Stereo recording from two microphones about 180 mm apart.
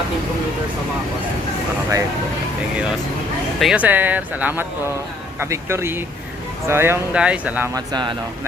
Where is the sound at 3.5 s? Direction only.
5° right (ahead or behind).